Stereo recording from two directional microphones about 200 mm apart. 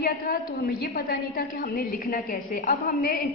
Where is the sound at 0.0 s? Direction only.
50° left (ahead or behind).